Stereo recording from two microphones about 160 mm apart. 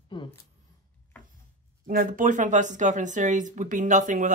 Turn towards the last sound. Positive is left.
turn(degrees=-50)  # may be behind; listen again after turning